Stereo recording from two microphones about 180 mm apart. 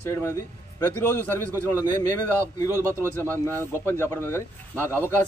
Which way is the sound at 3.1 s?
10° left (ahead or behind).